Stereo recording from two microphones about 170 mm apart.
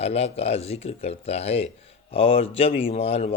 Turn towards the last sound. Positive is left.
turn(degrees=35)  # may be behind; listen again after turning